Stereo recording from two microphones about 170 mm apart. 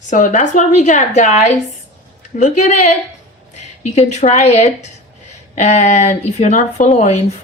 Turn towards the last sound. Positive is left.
turn(degrees=40)  # may be behind; listen again after turning